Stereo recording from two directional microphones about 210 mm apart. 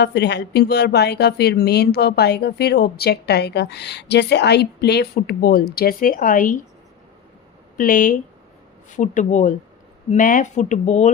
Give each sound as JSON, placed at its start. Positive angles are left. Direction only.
{"t": 0.0, "sound": "speech", "side_deg": 55}
{"t": 7.8, "sound": "speech", "side_deg": 40}